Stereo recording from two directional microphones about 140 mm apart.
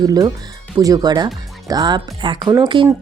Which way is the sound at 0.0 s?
30° right (ahead or behind).